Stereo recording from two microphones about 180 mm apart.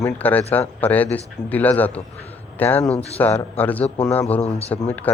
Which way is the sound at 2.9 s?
35° left (ahead or behind).